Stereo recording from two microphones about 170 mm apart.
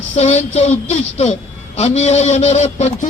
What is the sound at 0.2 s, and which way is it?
A woman's voice, 40° left (ahead or behind).